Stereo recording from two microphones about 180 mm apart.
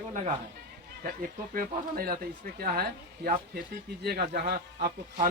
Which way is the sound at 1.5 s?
50° right (ahead or behind).